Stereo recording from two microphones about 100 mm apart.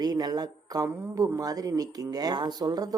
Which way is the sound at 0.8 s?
30° right (ahead or behind).